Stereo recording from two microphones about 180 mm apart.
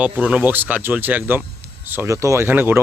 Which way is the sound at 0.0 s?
5° right (ahead or behind).